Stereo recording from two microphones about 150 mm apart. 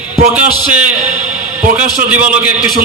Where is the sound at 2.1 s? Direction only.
10° right (ahead or behind).